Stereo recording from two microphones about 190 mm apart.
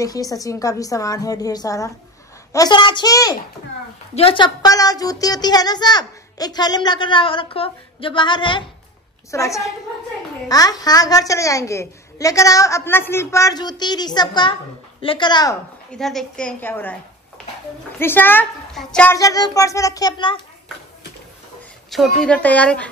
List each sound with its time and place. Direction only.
0.0 s a woman's voice: 20° left (ahead or behind)
15.9 s a woman's voice: centre (ahead or behind)
17.9 s a woman's voice: 10° left (ahead or behind)
19.1 s a woman's voice: 20° left (ahead or behind)
21.9 s a woman's voice: centre (ahead or behind)